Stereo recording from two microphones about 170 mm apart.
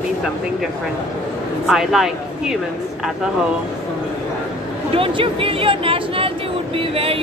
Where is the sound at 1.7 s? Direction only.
5° right (ahead or behind).